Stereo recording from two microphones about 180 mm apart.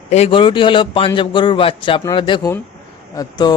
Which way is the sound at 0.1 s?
35° left (ahead or behind).